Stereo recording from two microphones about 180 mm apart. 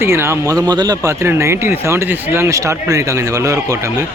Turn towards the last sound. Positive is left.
turn(degrees=-20)  # may be behind; listen again after turning